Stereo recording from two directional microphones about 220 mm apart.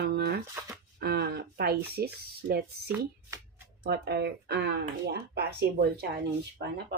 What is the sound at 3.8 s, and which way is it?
Speech, 50° right (ahead or behind).